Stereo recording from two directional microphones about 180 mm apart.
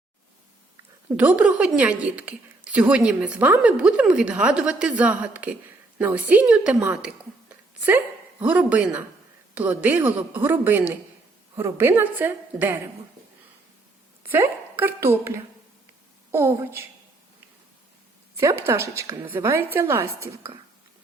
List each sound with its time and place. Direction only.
1.1 s a woman's voice: 10° right (ahead or behind)
14.3 s a woman's voice: 10° right (ahead or behind)
18.3 s a woman's voice: 15° right (ahead or behind)